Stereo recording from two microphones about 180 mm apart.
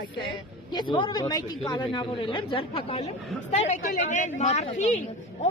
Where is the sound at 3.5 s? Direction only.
45° left (ahead or behind).